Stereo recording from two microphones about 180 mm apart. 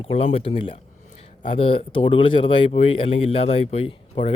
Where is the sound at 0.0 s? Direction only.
35° left (ahead or behind).